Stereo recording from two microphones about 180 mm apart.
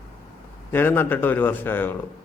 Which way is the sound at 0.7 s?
10° left (ahead or behind).